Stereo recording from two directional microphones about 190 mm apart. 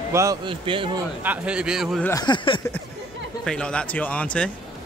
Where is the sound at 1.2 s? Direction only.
5° right (ahead or behind).